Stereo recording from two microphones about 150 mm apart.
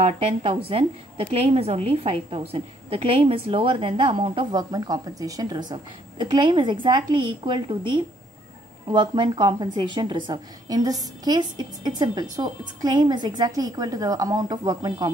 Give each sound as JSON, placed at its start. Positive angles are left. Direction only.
{"t": 0.3, "sound": "a woman's voice", "side_deg": -35}